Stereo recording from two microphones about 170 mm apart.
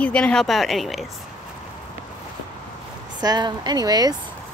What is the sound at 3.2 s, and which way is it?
Speech, 25° right (ahead or behind).